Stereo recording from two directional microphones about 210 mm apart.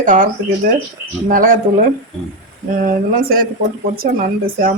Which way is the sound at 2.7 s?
40° right (ahead or behind).